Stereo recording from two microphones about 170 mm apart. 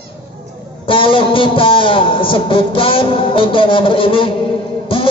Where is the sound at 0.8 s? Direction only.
30° left (ahead or behind).